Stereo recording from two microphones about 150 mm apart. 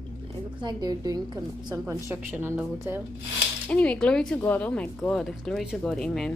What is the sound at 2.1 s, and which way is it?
Speech, 10° right (ahead or behind).